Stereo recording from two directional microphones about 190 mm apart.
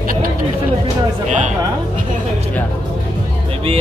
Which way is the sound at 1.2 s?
40° right (ahead or behind).